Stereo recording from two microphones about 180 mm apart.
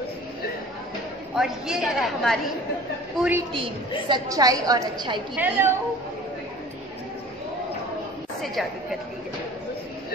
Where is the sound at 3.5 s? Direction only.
25° right (ahead or behind).